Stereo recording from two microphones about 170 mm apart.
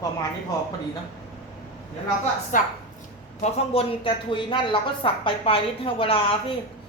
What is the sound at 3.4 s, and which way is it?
A woman's voice, 35° left (ahead or behind).